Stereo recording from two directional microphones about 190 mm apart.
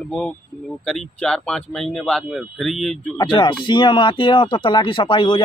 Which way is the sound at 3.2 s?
25° left (ahead or behind).